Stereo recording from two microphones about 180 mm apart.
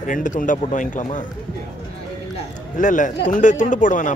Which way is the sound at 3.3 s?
45° left (ahead or behind).